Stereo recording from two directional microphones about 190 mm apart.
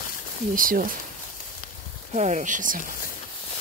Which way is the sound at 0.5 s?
45° right (ahead or behind).